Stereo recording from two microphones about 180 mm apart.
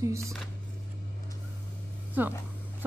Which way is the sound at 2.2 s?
10° right (ahead or behind).